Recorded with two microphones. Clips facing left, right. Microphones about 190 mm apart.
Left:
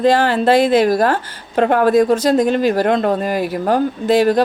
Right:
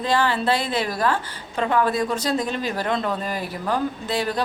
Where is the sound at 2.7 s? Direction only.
50° left (ahead or behind).